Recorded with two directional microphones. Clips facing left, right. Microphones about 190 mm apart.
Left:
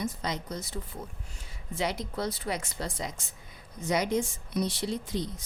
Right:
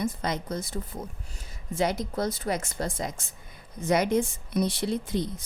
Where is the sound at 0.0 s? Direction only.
55° right (ahead or behind).